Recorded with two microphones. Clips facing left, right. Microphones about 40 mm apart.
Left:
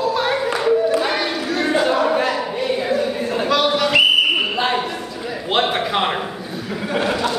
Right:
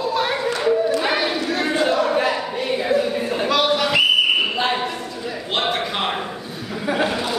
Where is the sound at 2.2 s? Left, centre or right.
Centre.